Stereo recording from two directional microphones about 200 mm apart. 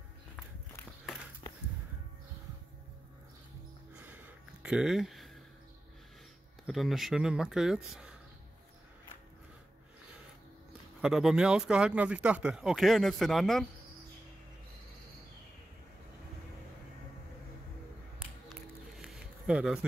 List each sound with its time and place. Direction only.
4.6 s speech: 5° right (ahead or behind)
6.6 s speech: centre (ahead or behind)
11.0 s speech: centre (ahead or behind)
18.9 s a sound: centre (ahead or behind)